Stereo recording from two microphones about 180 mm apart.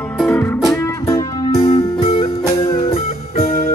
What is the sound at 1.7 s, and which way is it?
Music, 30° left (ahead or behind).